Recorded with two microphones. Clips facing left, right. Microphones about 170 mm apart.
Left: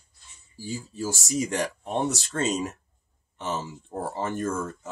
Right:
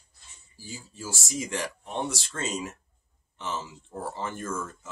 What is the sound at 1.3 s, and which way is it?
Speech, 40° left (ahead or behind).